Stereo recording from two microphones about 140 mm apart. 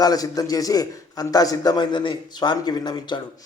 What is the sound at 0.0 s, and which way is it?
A man's voice, 25° left (ahead or behind).